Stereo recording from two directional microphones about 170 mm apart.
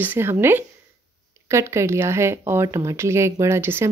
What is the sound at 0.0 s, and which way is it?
Speech, 10° right (ahead or behind).